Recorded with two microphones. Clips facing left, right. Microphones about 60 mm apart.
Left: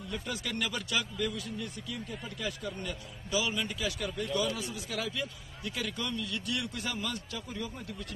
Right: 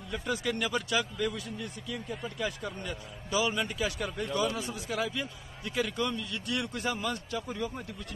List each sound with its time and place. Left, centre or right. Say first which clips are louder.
0.3 s speech: right 6 dB; centre
6.5 s speech: right 6 dB; right